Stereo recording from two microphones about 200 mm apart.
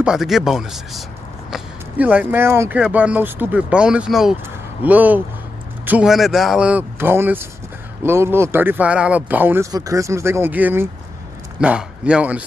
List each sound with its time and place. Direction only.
0.0 s speech: centre (ahead or behind)